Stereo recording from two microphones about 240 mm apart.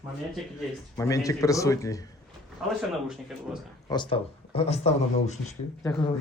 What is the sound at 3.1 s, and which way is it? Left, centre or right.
Speech, centre.